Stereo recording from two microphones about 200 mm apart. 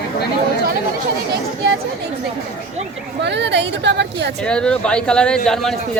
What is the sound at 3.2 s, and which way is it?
A woman's voice, 60° right (ahead or behind).